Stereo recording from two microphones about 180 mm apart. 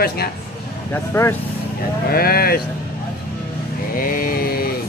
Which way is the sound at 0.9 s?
15° left (ahead or behind).